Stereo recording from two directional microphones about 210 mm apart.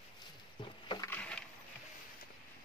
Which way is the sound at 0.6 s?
20° left (ahead or behind).